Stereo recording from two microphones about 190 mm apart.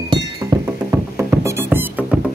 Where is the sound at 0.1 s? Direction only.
20° right (ahead or behind).